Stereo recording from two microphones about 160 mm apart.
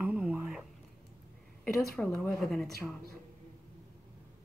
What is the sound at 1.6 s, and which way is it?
Speech, 5° left (ahead or behind).